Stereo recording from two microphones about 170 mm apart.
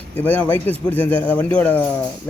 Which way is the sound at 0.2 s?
10° left (ahead or behind).